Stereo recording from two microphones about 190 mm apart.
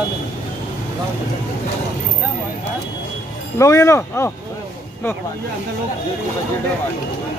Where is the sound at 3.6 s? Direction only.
15° left (ahead or behind).